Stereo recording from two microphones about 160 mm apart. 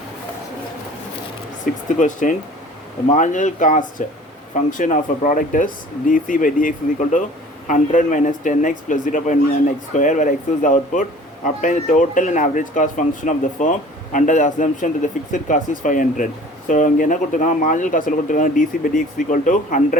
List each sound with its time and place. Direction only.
2.0 s speech: 55° left (ahead or behind)